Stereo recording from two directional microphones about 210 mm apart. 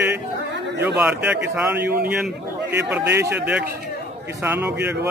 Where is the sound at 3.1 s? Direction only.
10° right (ahead or behind).